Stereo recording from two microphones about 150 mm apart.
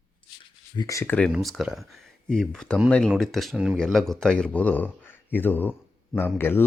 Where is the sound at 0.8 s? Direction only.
20° left (ahead or behind).